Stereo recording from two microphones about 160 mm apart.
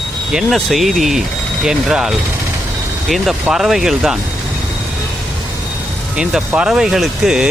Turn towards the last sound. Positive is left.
turn(degrees=-5)  # may be behind; listen again after turning